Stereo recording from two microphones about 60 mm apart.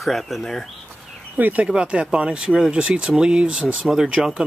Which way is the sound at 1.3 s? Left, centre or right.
Right.